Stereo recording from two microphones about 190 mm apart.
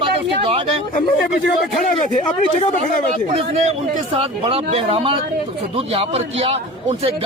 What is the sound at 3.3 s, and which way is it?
A man's voice, 30° right (ahead or behind).